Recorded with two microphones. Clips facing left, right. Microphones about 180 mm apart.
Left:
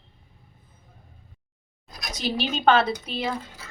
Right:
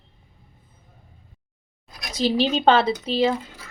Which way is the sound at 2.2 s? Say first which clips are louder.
Right 7 dB; 90° right.